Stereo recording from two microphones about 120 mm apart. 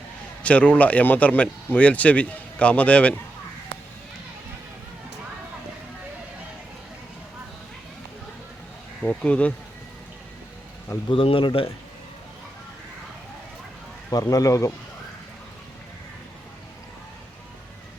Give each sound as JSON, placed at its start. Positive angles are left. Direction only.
{"t": 0.4, "sound": "speech", "side_deg": 10}
{"t": 9.0, "sound": "speech", "side_deg": 10}
{"t": 11.1, "sound": "speech", "side_deg": 50}
{"t": 14.1, "sound": "speech", "side_deg": 30}